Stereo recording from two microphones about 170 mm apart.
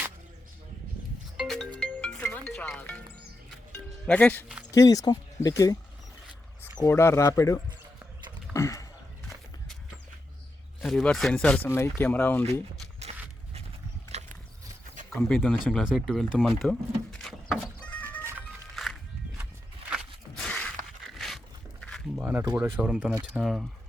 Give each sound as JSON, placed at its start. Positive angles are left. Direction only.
{"t": 1.4, "sound": "music", "side_deg": 0}
{"t": 4.0, "sound": "speech", "side_deg": 10}
{"t": 4.7, "sound": "speech", "side_deg": 20}
{"t": 6.7, "sound": "speech", "side_deg": 15}
{"t": 8.5, "sound": "a sound", "side_deg": 20}
{"t": 10.8, "sound": "speech", "side_deg": 5}
{"t": 14.1, "sound": "horse", "side_deg": -45}
{"t": 15.3, "sound": "speech", "side_deg": 0}
{"t": 16.6, "sound": "music", "side_deg": 0}
{"t": 18.8, "sound": "music", "side_deg": 0}
{"t": 19.9, "sound": "walk", "side_deg": 0}
{"t": 21.2, "sound": "a sound", "side_deg": 0}
{"t": 22.2, "sound": "a sound", "side_deg": -10}
{"t": 22.5, "sound": "speech", "side_deg": -10}